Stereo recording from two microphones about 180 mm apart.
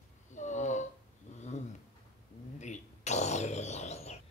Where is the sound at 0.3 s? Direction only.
40° left (ahead or behind).